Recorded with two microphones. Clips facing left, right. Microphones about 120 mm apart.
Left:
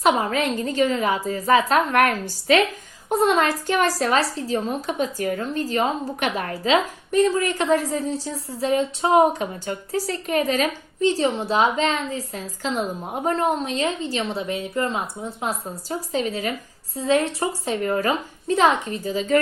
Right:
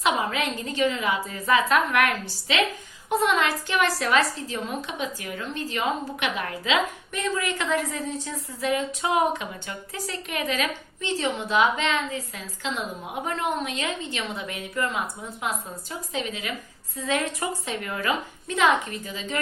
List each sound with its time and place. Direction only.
0.0 s a woman's voice: 40° left (ahead or behind)